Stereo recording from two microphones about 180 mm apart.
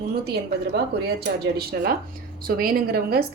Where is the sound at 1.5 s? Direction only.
60° right (ahead or behind).